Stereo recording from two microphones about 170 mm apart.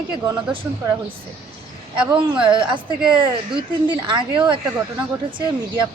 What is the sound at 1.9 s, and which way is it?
Speech, 30° right (ahead or behind).